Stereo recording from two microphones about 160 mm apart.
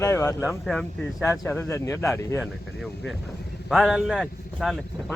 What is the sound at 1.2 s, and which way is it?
Speech, 15° left (ahead or behind).